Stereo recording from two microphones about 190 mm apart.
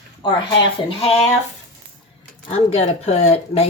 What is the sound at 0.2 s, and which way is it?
Speech, 25° left (ahead or behind).